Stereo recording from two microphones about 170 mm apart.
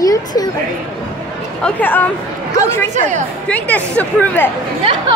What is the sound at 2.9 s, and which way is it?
Speech, 45° right (ahead or behind).